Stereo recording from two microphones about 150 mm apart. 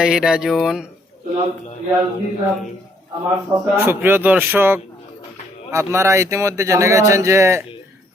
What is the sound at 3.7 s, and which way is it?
A man's voice, 15° right (ahead or behind).